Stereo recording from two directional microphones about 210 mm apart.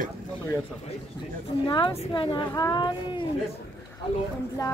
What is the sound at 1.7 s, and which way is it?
A woman's voice, 25° left (ahead or behind).